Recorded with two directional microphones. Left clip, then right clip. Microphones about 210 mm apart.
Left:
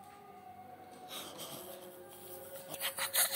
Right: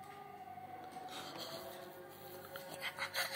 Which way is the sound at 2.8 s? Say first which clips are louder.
Left 4 dB; 15° left (ahead or behind).